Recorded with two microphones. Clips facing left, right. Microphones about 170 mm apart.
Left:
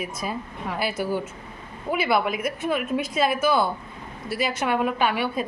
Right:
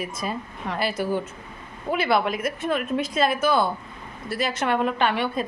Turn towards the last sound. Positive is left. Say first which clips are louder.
# even
turn(degrees=5)  # may be behind; listen again after turning